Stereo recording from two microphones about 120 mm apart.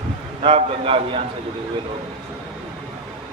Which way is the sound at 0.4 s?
50° right (ahead or behind).